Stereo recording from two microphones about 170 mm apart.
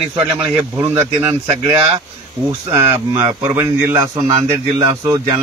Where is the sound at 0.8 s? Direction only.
15° right (ahead or behind).